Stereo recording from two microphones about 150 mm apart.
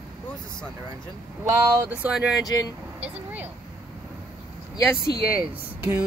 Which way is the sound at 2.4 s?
25° left (ahead or behind).